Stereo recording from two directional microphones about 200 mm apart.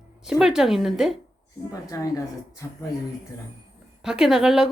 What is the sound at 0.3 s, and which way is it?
Speech, 5° right (ahead or behind).